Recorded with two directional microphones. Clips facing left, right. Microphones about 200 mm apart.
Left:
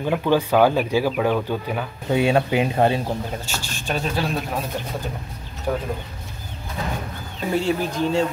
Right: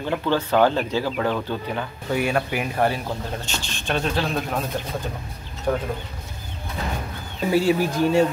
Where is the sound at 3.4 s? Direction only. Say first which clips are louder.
Even; 10° left (ahead or behind).